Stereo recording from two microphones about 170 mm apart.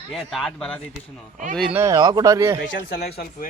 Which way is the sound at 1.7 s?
20° right (ahead or behind).